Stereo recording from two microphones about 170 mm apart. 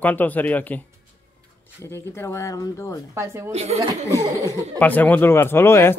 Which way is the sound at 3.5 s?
40° right (ahead or behind).